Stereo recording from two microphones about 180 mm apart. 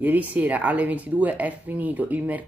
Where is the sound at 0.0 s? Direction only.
10° right (ahead or behind).